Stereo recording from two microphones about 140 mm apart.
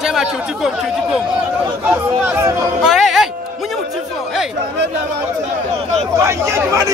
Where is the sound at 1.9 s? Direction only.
15° right (ahead or behind).